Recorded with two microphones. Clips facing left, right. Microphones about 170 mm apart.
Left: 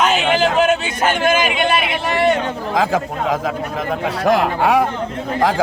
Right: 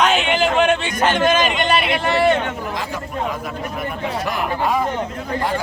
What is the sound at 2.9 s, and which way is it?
Speech, 90° left.